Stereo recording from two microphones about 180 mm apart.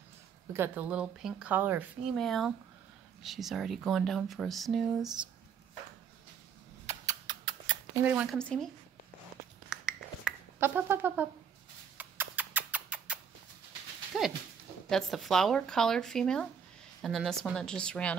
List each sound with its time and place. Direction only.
0.5 s speech: 10° right (ahead or behind)
2.1 s speech: centre (ahead or behind)
6.9 s scissors: 20° right (ahead or behind)
8.0 s speech: 10° right (ahead or behind)
8.4 s speech: 5° left (ahead or behind)
9.7 s finger snapping: 5° right (ahead or behind)
12.0 s rodents: 10° right (ahead or behind)
14.1 s dog: centre (ahead or behind)
14.9 s speech: centre (ahead or behind)